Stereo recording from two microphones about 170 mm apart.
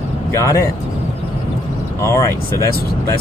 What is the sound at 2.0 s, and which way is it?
Speech, 15° left (ahead or behind).